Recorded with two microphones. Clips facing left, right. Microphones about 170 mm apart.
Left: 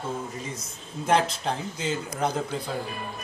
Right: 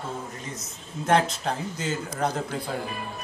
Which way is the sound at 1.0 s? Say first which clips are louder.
Right 1 dB; centre (ahead or behind).